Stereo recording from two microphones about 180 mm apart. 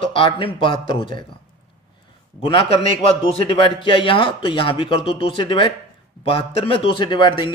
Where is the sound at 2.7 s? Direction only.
35° left (ahead or behind).